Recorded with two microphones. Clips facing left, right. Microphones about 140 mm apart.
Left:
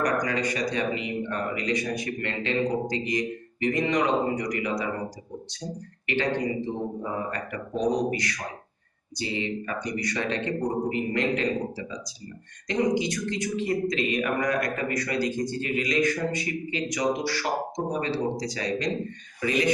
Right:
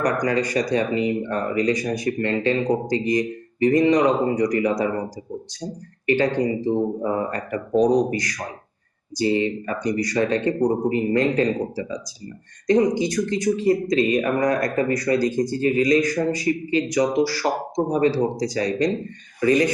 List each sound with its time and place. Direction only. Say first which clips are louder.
0.0 s speech: right 4 dB; 35° right (ahead or behind)
12.6 s speech: right 6 dB; 40° right (ahead or behind)